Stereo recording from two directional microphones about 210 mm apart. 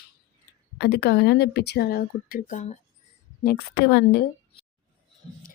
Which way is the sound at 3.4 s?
50° left (ahead or behind).